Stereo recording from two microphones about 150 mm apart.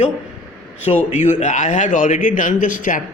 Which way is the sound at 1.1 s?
50° left (ahead or behind).